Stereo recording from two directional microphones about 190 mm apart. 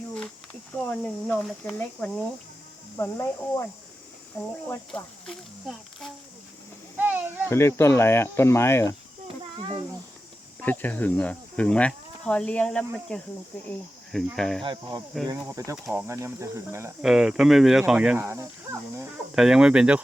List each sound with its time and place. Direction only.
0.9 s speech: 10° left (ahead or behind)
3.0 s speech: 15° left (ahead or behind)
4.9 s speech: 5° left (ahead or behind)
7.0 s a sound: 10° right (ahead or behind)
7.5 s speech: 15° left (ahead or behind)
9.2 s a sound: 25° right (ahead or behind)
10.6 s speech: 10° left (ahead or behind)
14.6 s speech: 25° right (ahead or behind)
17.0 s speech: centre (ahead or behind)
19.4 s speech: 5° right (ahead or behind)